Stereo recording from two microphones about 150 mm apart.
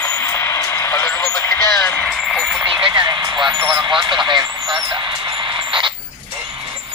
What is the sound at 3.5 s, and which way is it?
Speech, 30° right (ahead or behind).